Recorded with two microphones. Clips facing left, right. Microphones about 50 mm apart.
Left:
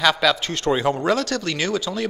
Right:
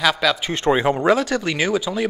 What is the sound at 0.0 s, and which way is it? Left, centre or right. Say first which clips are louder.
Speech: even; centre.